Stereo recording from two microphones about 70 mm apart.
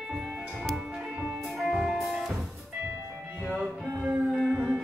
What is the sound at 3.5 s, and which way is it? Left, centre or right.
Music, centre.